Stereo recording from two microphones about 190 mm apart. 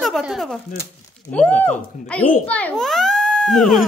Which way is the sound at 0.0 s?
Centre (ahead or behind).